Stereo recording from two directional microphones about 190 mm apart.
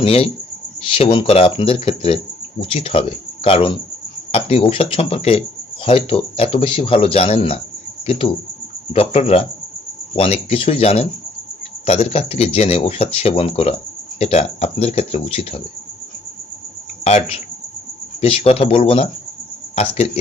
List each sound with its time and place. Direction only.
0.0 s speech: 30° left (ahead or behind)
17.0 s speech: 35° left (ahead or behind)